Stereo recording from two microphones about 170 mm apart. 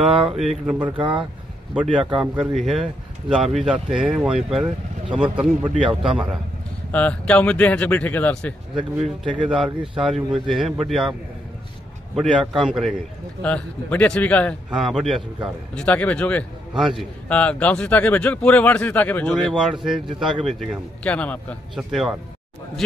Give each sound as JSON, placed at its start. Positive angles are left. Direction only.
{"t": 0.1, "sound": "speech", "side_deg": -35}
{"t": 0.4, "sound": "a man's voice", "side_deg": -5}
{"t": 0.8, "sound": "speech", "side_deg": -30}
{"t": 1.7, "sound": "a man's voice", "side_deg": -5}
{"t": 6.9, "sound": "speech", "side_deg": 10}
{"t": 9.5, "sound": "a man's voice", "side_deg": -5}
{"t": 10.1, "sound": "speech", "side_deg": -30}
{"t": 10.5, "sound": "a man's voice", "side_deg": 0}
{"t": 12.2, "sound": "a man's voice", "side_deg": 0}
{"t": 14.7, "sound": "a man's voice", "side_deg": -5}
{"t": 16.7, "sound": "a man's voice", "side_deg": 0}
{"t": 19.4, "sound": "a man's voice", "side_deg": -5}